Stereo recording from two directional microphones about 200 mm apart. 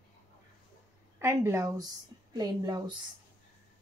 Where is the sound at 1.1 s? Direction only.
15° right (ahead or behind).